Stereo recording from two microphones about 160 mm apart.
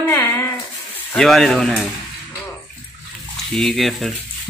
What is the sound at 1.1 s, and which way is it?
Speech, centre (ahead or behind).